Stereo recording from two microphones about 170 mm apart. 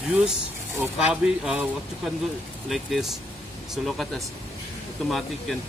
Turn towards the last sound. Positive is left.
turn(degrees=0)  # may be behind; listen again after turning